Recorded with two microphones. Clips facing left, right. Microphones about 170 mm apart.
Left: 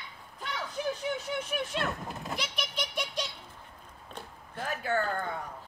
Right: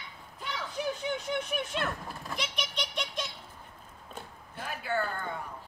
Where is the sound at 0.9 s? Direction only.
Centre (ahead or behind).